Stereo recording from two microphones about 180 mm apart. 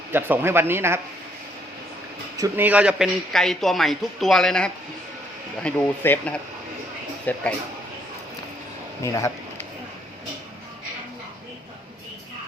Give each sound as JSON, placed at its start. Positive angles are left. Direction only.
{"t": 0.1, "sound": "speech", "side_deg": -10}
{"t": 2.3, "sound": "speech", "side_deg": -15}
{"t": 9.1, "sound": "a sound", "side_deg": 15}